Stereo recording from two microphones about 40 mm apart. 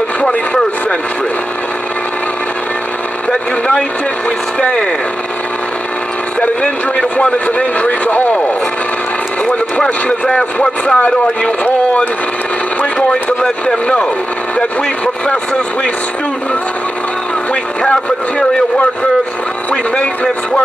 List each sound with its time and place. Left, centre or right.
4.6 s speech: left
6.6 s speech: left
7.4 s speech: left
10.0 s speech: centre
11.6 s speech: left
13.1 s speech: centre
15.2 s speech: left